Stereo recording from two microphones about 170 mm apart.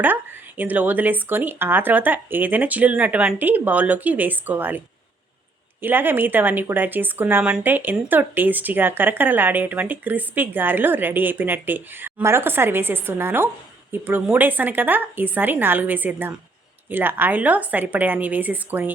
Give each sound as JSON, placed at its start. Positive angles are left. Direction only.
{"t": 0.0, "sound": "speech", "side_deg": -10}
{"t": 5.8, "sound": "speech", "side_deg": -10}